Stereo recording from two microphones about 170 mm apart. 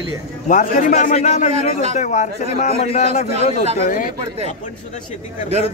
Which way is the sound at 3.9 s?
55° left (ahead or behind).